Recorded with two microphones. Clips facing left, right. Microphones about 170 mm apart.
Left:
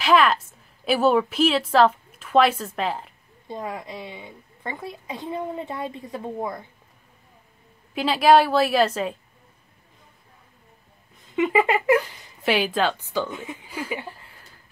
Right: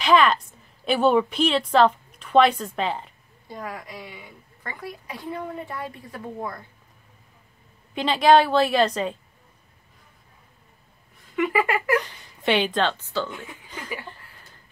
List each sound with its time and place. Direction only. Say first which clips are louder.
0.0 s a woman's voice: even; 5° left (ahead or behind)
3.4 s a woman's voice: left 3 dB; 25° left (ahead or behind)
7.9 s a woman's voice: even; 5° left (ahead or behind)
11.3 s a woman's voice: left 2 dB; 20° left (ahead or behind)
12.0 s a woman's voice: left 2 dB; 5° left (ahead or behind); by 13.7 s 20° left (ahead or behind)
13.7 s a sound: left 7 dB; 10° left (ahead or behind)